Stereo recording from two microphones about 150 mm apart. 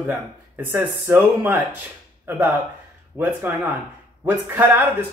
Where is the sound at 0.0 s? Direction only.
15° right (ahead or behind).